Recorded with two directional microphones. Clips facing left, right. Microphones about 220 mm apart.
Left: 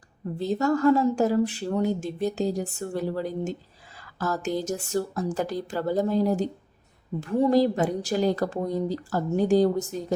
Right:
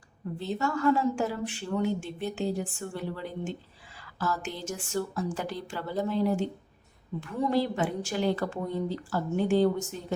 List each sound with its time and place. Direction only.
0.3 s speech: 40° left (ahead or behind)